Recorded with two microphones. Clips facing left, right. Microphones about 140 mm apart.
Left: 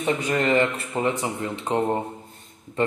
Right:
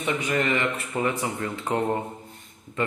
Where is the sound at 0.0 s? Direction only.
35° left (ahead or behind).